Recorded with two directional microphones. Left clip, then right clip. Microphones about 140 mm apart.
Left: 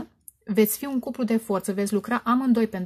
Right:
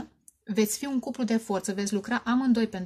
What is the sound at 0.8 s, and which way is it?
Speech, 25° left (ahead or behind).